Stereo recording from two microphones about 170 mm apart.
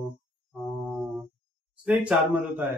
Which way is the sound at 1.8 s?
5° right (ahead or behind).